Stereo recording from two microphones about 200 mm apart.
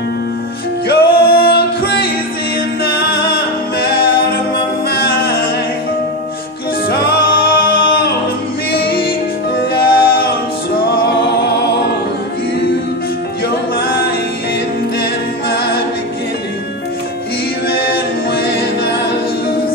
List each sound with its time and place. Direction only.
0.8 s music: 50° left (ahead or behind)
4.9 s a capella: 50° left (ahead or behind)
6.9 s music: 50° left (ahead or behind)
9.8 s music: 50° left (ahead or behind)
15.5 s a capella: 50° left (ahead or behind)
17.6 s a capella: 50° left (ahead or behind)